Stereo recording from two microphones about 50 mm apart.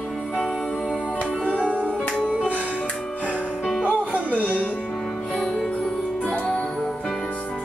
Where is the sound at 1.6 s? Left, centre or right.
Right.